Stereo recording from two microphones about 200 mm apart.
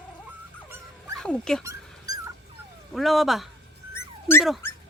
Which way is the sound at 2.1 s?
15° right (ahead or behind).